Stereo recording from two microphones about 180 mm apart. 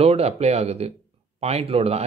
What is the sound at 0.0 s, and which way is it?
Speech, 35° right (ahead or behind).